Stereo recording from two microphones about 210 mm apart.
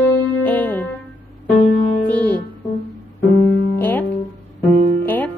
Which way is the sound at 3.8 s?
10° left (ahead or behind).